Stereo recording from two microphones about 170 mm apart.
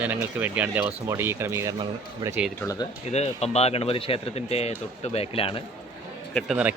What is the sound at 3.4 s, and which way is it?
Speech, 40° left (ahead or behind).